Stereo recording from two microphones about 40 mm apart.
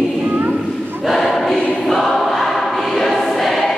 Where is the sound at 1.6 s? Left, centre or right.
Left.